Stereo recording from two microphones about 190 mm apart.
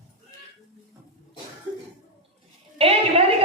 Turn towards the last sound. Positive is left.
turn(degrees=-30)  # may be behind; listen again after turning